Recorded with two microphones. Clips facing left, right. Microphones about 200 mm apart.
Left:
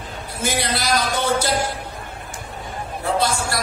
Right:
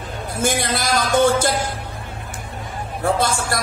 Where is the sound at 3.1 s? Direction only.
50° right (ahead or behind).